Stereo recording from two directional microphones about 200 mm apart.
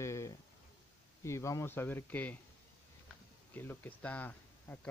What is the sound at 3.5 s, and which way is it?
Speech, 10° left (ahead or behind).